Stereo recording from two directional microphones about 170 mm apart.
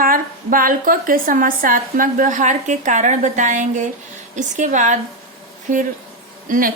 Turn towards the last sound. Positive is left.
turn(degrees=-55)  # may be behind; listen again after turning